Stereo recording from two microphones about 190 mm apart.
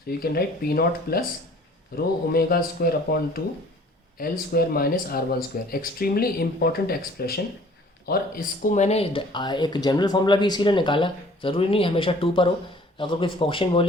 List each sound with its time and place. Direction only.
0.1 s speech: 55° left (ahead or behind); by 13.8 s 30° left (ahead or behind)